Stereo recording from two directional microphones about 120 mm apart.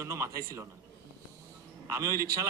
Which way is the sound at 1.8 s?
25° right (ahead or behind).